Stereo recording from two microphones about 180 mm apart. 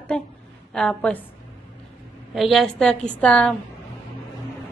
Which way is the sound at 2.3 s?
Centre (ahead or behind).